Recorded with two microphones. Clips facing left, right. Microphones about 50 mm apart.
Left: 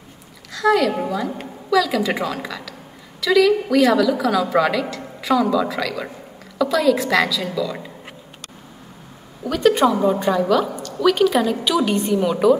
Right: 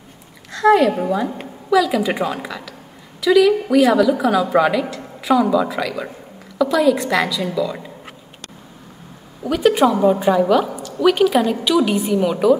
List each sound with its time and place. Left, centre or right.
0.6 s a woman's voice: right
1.4 s a woman's voice: centre
9.4 s a woman's voice: centre